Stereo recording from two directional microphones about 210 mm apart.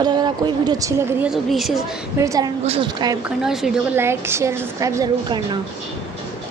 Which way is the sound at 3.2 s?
Centre (ahead or behind).